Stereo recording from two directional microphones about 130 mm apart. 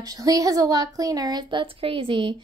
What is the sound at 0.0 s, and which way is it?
A woman's voice, 25° right (ahead or behind).